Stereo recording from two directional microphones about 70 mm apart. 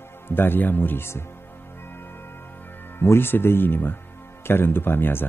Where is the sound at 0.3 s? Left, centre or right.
Left.